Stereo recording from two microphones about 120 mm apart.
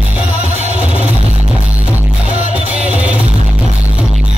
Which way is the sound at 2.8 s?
10° right (ahead or behind).